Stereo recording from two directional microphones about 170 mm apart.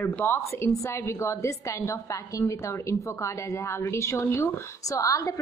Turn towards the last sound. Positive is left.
turn(degrees=20)  # may be behind; listen again after turning